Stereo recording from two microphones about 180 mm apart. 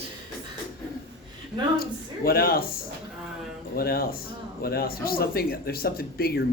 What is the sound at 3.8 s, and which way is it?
Speech, 55° left (ahead or behind).